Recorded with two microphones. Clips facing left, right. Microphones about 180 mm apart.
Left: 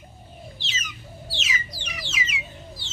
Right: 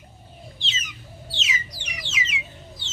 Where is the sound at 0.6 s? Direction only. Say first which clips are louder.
Right 2 dB; 20° right (ahead or behind).